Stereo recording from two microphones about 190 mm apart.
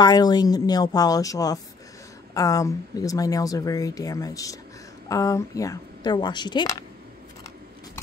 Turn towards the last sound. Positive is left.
turn(degrees=25)  # may be behind; listen again after turning